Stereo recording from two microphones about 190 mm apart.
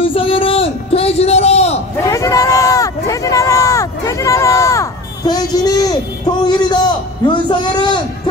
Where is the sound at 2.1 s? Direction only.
15° left (ahead or behind).